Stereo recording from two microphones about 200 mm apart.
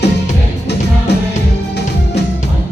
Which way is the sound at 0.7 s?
60° left (ahead or behind).